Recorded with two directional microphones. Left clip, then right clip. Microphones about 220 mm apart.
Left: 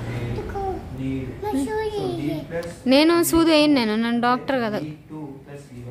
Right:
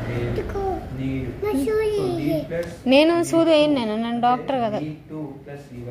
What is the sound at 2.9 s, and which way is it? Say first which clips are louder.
A woman's voice: even; 10° left (ahead or behind).